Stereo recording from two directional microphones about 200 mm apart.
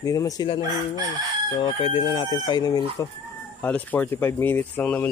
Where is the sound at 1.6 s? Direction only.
25° left (ahead or behind).